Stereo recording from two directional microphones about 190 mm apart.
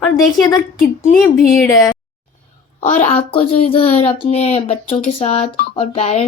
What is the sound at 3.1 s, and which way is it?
Speech, 30° left (ahead or behind).